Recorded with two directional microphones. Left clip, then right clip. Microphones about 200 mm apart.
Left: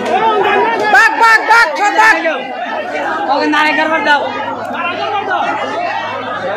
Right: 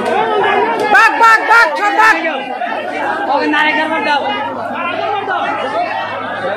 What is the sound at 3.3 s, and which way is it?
Speech, 35° left (ahead or behind).